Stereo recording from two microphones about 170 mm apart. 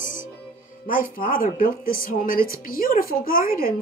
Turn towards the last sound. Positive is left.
turn(degrees=55)  # may be behind; listen again after turning